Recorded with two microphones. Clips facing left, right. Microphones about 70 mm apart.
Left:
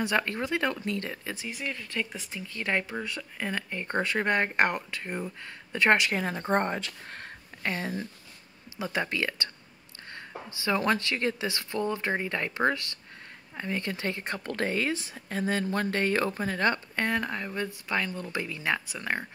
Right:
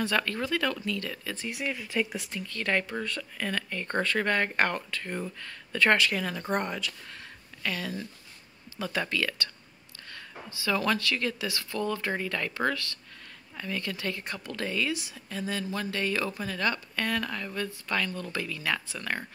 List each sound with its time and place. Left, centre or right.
0.0 s speech: left
1.5 s speech: centre
2.3 s speech: centre